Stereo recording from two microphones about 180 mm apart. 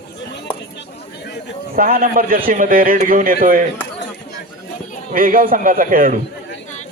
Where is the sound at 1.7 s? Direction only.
55° right (ahead or behind).